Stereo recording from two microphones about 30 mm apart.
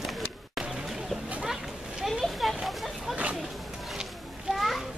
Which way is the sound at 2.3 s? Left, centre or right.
Centre.